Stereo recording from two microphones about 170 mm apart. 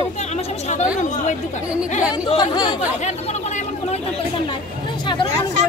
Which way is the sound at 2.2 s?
25° left (ahead or behind).